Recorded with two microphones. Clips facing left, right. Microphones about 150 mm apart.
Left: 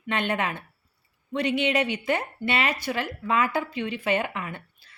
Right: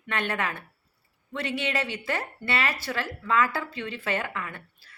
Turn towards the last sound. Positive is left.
turn(degrees=20)  # may be behind; listen again after turning